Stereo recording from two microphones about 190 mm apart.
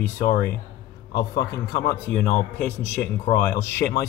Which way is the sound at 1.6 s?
55° left (ahead or behind).